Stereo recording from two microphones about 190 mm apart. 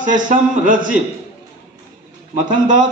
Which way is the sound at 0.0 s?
45° right (ahead or behind).